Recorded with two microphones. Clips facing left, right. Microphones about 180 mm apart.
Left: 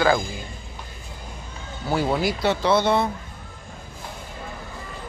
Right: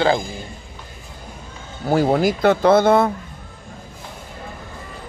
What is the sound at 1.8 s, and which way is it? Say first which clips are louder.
Speech: right 6 dB; 45° right (ahead or behind).